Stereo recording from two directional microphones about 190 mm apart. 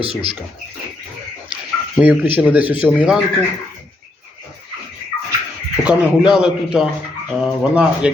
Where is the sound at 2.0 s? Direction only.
5° right (ahead or behind).